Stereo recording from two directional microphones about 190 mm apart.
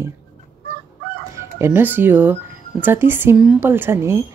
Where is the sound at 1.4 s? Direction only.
15° right (ahead or behind).